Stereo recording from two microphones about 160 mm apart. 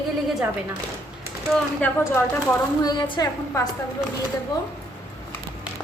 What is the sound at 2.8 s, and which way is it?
Speech, 25° left (ahead or behind).